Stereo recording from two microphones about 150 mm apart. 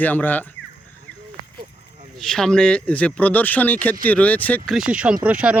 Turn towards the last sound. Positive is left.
turn(degrees=-10)  # may be behind; listen again after turning